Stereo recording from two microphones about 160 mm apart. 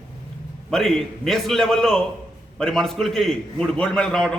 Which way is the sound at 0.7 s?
5° left (ahead or behind).